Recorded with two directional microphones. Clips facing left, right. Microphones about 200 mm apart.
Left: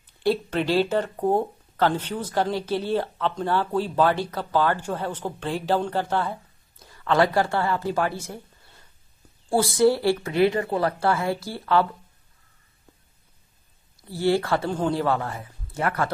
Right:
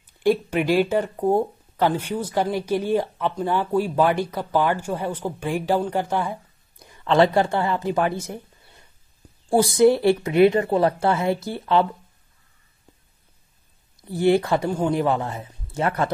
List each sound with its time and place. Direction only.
0.2 s speech: 15° right (ahead or behind)
14.0 s speech: 20° right (ahead or behind)